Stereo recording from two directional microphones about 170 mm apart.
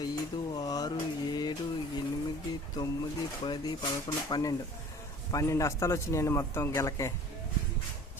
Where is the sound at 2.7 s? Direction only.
25° left (ahead or behind).